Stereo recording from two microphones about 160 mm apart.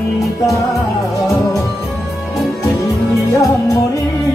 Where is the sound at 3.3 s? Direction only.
20° left (ahead or behind).